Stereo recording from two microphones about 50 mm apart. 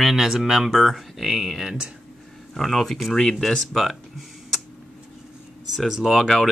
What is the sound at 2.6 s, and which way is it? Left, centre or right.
Speech, centre.